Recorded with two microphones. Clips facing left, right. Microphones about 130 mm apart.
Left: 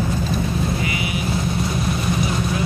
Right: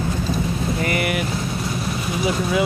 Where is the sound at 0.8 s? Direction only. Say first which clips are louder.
Right 3 dB; 55° right (ahead or behind).